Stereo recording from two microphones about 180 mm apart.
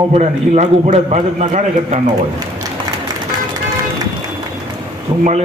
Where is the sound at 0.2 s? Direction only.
40° right (ahead or behind).